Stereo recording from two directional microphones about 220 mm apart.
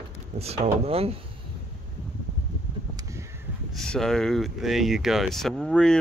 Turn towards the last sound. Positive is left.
turn(degrees=5)  # may be behind; listen again after turning